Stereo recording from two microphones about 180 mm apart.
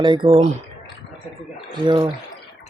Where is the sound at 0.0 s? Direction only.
25° right (ahead or behind).